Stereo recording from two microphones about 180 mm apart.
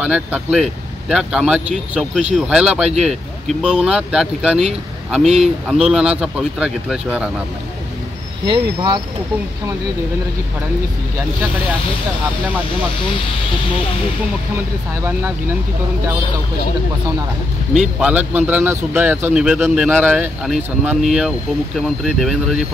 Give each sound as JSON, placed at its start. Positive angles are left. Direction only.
{"t": 0.0, "sound": "speech", "side_deg": -5}
{"t": 8.5, "sound": "speech", "side_deg": -25}
{"t": 15.0, "sound": "a man's voice", "side_deg": -10}
{"t": 17.7, "sound": "a man's voice", "side_deg": -5}